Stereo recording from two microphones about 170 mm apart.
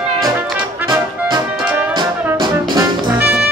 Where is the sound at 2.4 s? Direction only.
25° right (ahead or behind).